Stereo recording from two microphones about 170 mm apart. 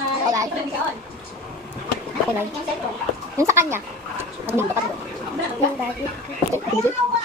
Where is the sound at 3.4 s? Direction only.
15° right (ahead or behind).